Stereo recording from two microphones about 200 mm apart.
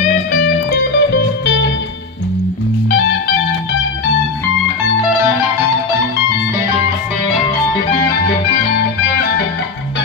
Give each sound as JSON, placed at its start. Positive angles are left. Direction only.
{"t": 0.4, "sound": "music", "side_deg": 55}